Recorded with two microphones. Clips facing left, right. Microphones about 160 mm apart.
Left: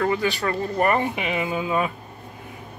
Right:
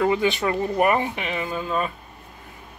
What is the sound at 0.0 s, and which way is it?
Speech, 20° right (ahead or behind).